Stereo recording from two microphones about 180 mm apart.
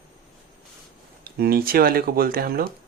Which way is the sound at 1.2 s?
55° right (ahead or behind).